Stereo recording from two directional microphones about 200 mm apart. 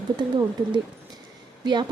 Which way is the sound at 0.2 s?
20° right (ahead or behind).